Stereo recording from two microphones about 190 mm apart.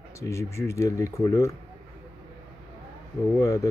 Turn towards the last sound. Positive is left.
turn(degrees=15)  # may be behind; listen again after turning